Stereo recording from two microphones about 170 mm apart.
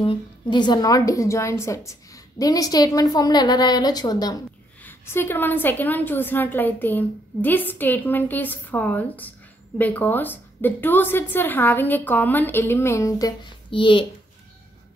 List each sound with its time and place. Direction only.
0.0 s a woman's voice: 30° left (ahead or behind)